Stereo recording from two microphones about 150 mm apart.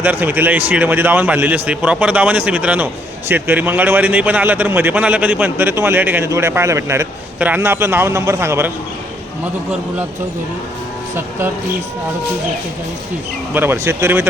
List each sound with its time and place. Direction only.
0.0 s a man's voice: 10° right (ahead or behind)
13.5 s a man's voice: 15° right (ahead or behind)